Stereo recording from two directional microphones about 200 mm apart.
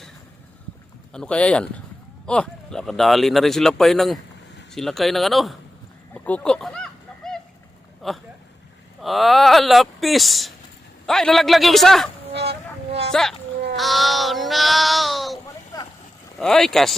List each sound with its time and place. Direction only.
1.1 s speech: 5° left (ahead or behind)
6.1 s a sound: 5° left (ahead or behind)
8.0 s speech: centre (ahead or behind)
12.3 s music: 55° right (ahead or behind)
13.7 s speech: centre (ahead or behind)
16.4 s speech: centre (ahead or behind)